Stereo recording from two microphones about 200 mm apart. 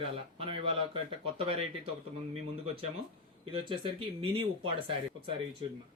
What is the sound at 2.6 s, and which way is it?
Speech, 30° right (ahead or behind).